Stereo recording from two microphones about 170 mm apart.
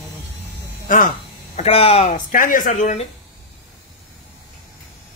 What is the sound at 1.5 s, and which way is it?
Speech, 35° left (ahead or behind).